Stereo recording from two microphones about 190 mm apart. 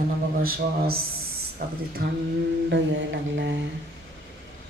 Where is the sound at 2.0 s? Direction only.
55° right (ahead or behind).